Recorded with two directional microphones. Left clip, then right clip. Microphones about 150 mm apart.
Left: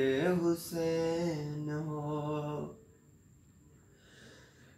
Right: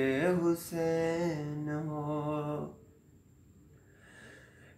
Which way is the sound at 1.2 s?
35° right (ahead or behind).